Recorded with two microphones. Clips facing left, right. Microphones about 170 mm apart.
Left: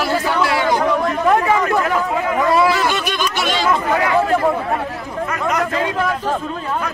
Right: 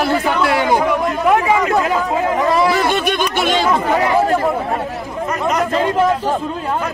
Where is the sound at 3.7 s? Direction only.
20° right (ahead or behind).